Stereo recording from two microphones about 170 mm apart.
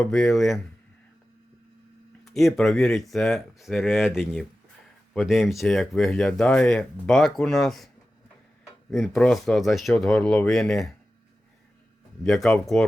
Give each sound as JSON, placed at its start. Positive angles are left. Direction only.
{"t": 0.0, "sound": "speech", "side_deg": 0}
{"t": 2.2, "sound": "speech", "side_deg": 0}
{"t": 8.9, "sound": "speech", "side_deg": 0}
{"t": 12.2, "sound": "speech", "side_deg": 5}